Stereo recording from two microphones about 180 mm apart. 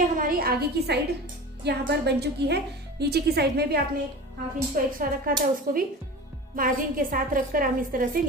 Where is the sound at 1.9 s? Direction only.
65° right (ahead or behind).